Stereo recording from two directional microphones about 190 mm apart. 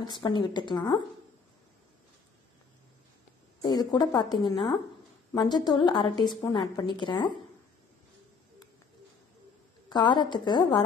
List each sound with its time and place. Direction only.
0.1 s a woman's voice: 25° left (ahead or behind)
3.6 s a woman's voice: 20° left (ahead or behind)
9.8 s a woman's voice: 25° left (ahead or behind)